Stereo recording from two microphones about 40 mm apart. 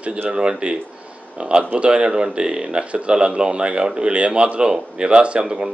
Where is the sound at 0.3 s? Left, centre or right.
Right.